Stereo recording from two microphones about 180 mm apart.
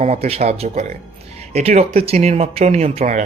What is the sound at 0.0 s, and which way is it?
Speech, 35° right (ahead or behind).